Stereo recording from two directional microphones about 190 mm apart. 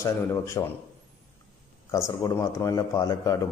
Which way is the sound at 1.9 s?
15° left (ahead or behind).